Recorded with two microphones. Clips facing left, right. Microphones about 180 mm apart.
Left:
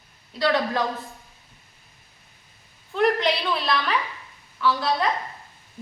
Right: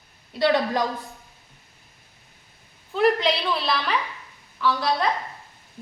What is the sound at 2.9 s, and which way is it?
A woman's voice, centre (ahead or behind).